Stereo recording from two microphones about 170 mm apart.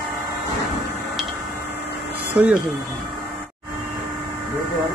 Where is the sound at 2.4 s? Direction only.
5° right (ahead or behind).